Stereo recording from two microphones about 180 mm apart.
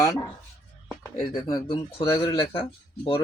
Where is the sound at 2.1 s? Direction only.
20° left (ahead or behind).